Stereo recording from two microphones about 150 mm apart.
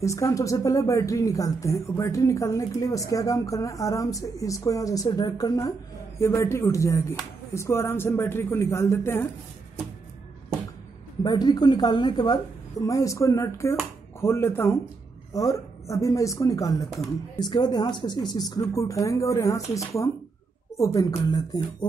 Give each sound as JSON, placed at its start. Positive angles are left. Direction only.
{"t": 0.0, "sound": "speech", "side_deg": 20}
{"t": 11.2, "sound": "speech", "side_deg": 25}